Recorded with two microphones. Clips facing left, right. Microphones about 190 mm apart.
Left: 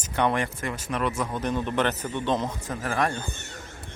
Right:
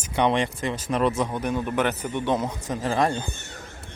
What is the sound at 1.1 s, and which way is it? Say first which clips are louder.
A man's voice: right 2 dB; 15° right (ahead or behind).